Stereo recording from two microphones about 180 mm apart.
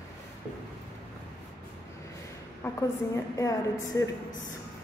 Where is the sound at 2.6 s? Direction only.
10° left (ahead or behind).